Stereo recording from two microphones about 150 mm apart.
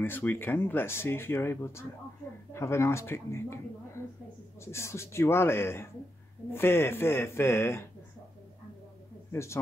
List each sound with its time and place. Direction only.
0.0 s speech: 15° left (ahead or behind)
9.3 s speech: 20° left (ahead or behind)